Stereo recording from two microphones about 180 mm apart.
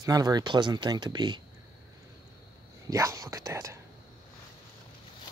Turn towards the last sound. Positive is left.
turn(degrees=-15)  # may be behind; listen again after turning